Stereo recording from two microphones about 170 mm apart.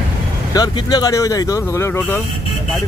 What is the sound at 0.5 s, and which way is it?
Speech, 25° left (ahead or behind).